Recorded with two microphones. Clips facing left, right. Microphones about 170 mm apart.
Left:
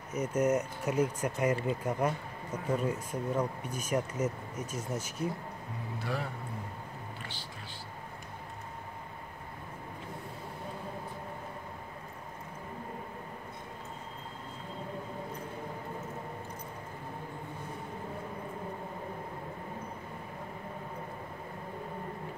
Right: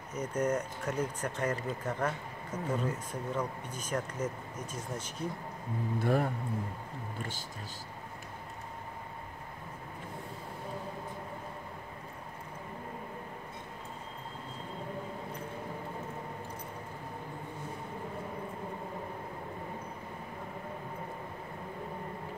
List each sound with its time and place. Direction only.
0.1 s speech: 10° left (ahead or behind)
5.9 s speech: 50° right (ahead or behind)